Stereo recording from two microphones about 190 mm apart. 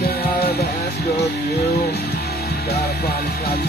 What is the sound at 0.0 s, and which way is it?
Music, 55° left (ahead or behind).